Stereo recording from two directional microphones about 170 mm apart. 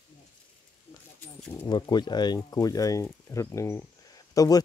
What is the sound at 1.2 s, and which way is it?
Speech, 10° left (ahead or behind).